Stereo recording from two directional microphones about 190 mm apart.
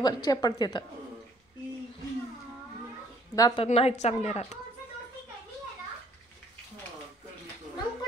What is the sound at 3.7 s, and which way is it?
Speech, 35° left (ahead or behind).